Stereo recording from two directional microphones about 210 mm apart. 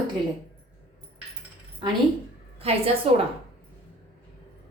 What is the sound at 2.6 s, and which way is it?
Speech, 25° right (ahead or behind).